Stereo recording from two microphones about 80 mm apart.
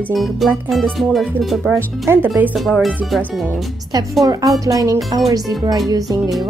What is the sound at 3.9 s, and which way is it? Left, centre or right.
Speech, right.